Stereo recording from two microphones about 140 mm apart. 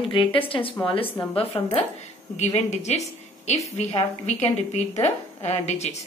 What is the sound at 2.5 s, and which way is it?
A woman's voice, 55° left (ahead or behind).